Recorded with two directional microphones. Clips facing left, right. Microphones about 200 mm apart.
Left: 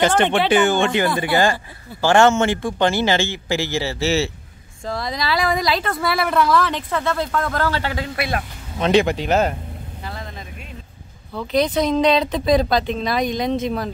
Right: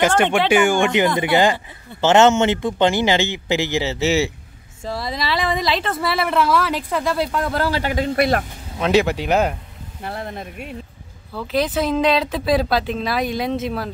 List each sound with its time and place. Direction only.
0.5 s speech: 10° right (ahead or behind)
4.8 s a woman's voice: 5° right (ahead or behind)
8.2 s speech: 40° right (ahead or behind)
8.7 s a woman's voice: 5° right (ahead or behind)
10.0 s vehicle: 60° right (ahead or behind)
11.3 s a woman's voice: 5° right (ahead or behind)